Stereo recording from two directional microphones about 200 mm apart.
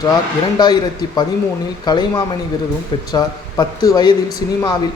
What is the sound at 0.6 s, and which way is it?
Speech, 20° left (ahead or behind).